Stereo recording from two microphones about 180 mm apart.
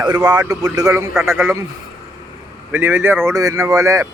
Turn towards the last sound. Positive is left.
turn(degrees=-20)  # may be behind; listen again after turning